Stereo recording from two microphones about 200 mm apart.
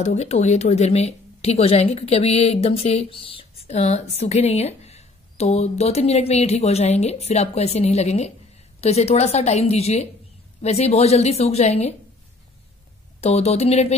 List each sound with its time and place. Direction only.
0.0 s speech: 35° left (ahead or behind)
13.2 s speech: 30° left (ahead or behind)